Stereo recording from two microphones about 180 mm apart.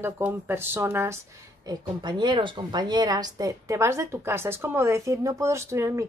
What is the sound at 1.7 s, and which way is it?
A woman's voice, 25° right (ahead or behind).